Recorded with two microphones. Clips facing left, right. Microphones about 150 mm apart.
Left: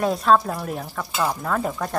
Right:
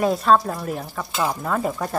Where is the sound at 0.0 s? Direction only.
Centre (ahead or behind).